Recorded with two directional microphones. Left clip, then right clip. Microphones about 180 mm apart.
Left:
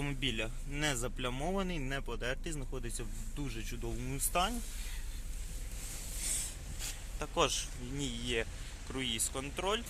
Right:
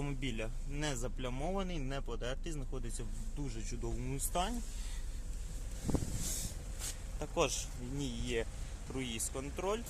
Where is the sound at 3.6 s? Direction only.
Centre (ahead or behind).